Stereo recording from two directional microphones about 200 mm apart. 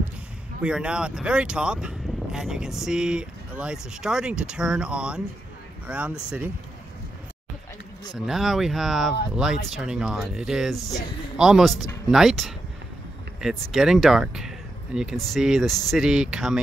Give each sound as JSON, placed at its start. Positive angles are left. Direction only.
{"t": 0.6, "sound": "speech", "side_deg": -5}
{"t": 8.3, "sound": "speech", "side_deg": 0}
{"t": 10.8, "sound": "speech", "side_deg": 15}
{"t": 11.3, "sound": "speech", "side_deg": -5}